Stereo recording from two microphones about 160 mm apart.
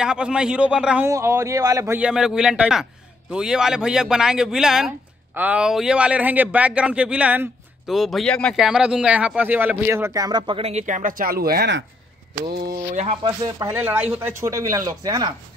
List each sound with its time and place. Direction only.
0.0 s a man's voice: 5° right (ahead or behind)
1.1 s speech: 15° right (ahead or behind)
2.0 s a man's voice: 5° right (ahead or behind); by 11.7 s 70° right (ahead or behind)
12.9 s speech: 45° right (ahead or behind)
13.2 s speech: 25° right (ahead or behind)
13.7 s speech: 10° right (ahead or behind)